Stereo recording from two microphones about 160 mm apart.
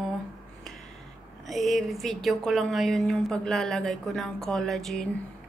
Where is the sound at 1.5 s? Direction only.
Centre (ahead or behind).